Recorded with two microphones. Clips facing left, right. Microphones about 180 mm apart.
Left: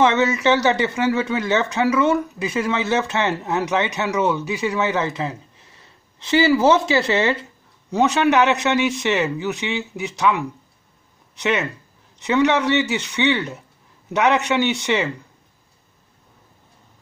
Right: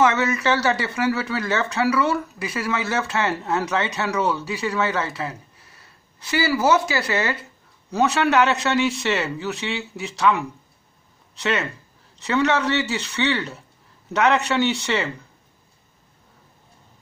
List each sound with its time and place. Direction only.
0.0 s speech: 25° left (ahead or behind)
12.2 s speech: 15° left (ahead or behind)